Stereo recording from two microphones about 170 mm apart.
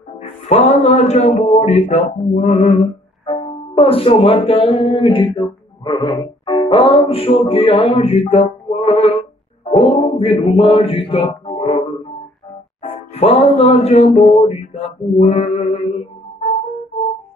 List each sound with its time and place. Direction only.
0.2 s speech: 40° left (ahead or behind)
3.3 s music: 35° left (ahead or behind)
12.8 s music: 35° left (ahead or behind)